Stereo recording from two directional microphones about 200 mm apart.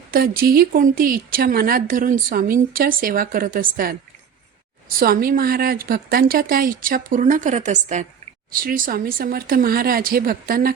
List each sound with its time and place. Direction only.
0.1 s speech: 45° right (ahead or behind)